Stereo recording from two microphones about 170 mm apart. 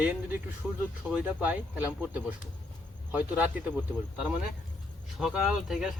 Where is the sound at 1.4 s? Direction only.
10° right (ahead or behind).